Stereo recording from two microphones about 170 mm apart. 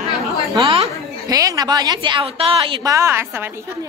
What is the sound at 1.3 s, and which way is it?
A woman's voice, 20° right (ahead or behind).